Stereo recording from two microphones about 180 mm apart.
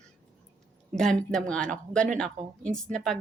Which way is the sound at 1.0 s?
5° left (ahead or behind).